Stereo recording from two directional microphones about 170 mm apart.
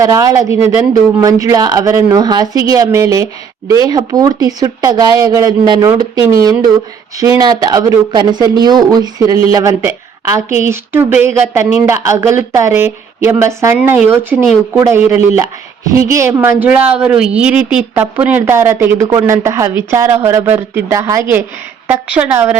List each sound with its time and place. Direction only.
0.0 s a woman's voice: 20° right (ahead or behind)